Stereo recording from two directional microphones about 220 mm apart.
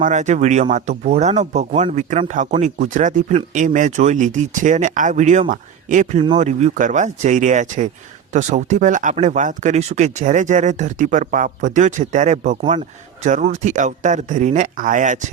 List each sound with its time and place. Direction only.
0.0 s speech: 35° right (ahead or behind)